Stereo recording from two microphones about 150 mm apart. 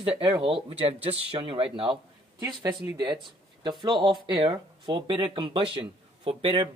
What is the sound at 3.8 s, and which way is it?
Speech, 30° right (ahead or behind).